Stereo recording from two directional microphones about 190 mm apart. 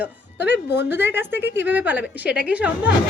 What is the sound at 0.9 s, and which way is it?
A woman's voice, 10° right (ahead or behind).